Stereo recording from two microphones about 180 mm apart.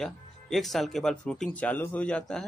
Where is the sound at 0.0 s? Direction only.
Centre (ahead or behind).